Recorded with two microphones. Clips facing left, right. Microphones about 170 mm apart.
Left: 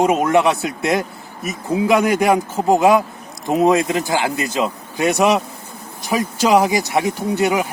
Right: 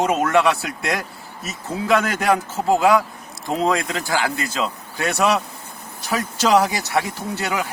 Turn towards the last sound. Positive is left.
turn(degrees=20)  # may be behind; listen again after turning